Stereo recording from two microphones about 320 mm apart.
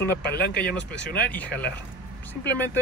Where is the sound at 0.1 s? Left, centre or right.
Left.